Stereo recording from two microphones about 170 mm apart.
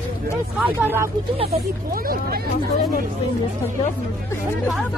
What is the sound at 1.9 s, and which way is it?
Speech, 60° right (ahead or behind).